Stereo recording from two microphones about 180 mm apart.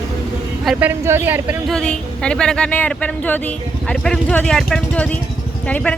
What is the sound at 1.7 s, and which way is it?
A woman's voice, 5° left (ahead or behind).